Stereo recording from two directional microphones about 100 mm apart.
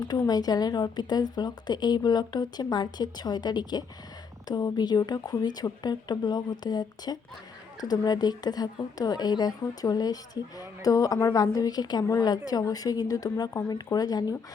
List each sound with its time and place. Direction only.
0.3 s a woman's voice: 40° left (ahead or behind)